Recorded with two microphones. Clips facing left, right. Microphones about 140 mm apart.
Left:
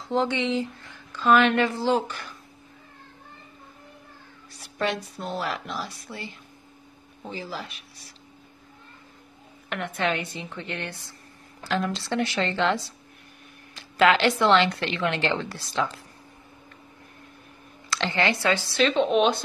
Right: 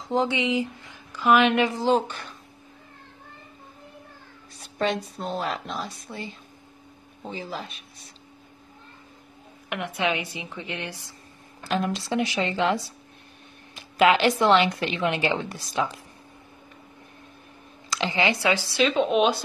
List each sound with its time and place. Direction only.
0.1 s speech: 15° right (ahead or behind)
4.7 s speech: 20° right (ahead or behind)
9.7 s a woman's voice: 10° right (ahead or behind)
17.8 s speech: 15° right (ahead or behind)